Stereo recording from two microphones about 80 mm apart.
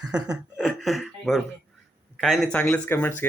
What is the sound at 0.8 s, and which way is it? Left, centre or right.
Speech, centre.